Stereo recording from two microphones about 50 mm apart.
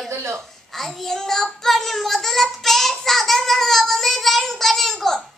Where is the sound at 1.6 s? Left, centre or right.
Centre.